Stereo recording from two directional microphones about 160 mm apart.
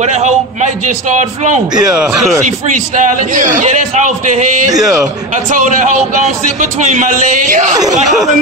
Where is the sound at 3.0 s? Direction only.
55° right (ahead or behind).